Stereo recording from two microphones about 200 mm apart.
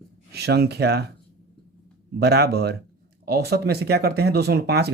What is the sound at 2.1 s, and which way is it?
Speech, 50° right (ahead or behind).